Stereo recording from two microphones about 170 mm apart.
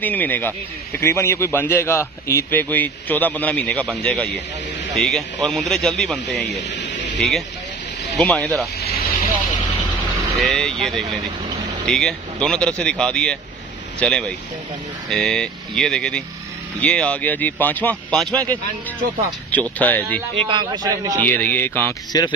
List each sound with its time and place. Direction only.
0.0 s a man's voice: 10° left (ahead or behind)
6.5 s a sound: 90° left
7.2 s speech: centre (ahead or behind)
8.8 s vehicle: 65° left (ahead or behind)
10.4 s a man's voice: 5° left (ahead or behind)
20.3 s a man's voice: 30° right (ahead or behind)
21.2 s a man's voice: 10° left (ahead or behind)